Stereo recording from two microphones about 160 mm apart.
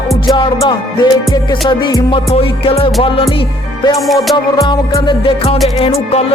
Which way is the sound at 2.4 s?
35° left (ahead or behind).